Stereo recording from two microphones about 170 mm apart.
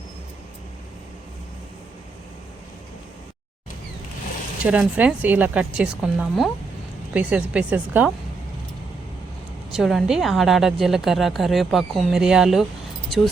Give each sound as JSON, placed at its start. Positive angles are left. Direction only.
{"t": 4.6, "sound": "speech", "side_deg": -10}
{"t": 9.7, "sound": "a woman's voice", "side_deg": 0}